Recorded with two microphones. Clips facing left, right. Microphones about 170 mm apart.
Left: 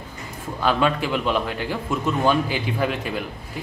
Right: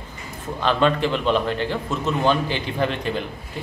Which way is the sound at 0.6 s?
10° left (ahead or behind).